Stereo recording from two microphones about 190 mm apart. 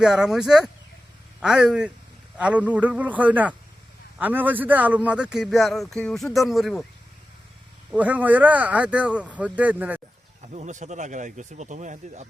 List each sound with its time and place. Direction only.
0.0 s a man's voice: centre (ahead or behind)
7.9 s speech: 5° right (ahead or behind)
10.4 s speech: 35° right (ahead or behind)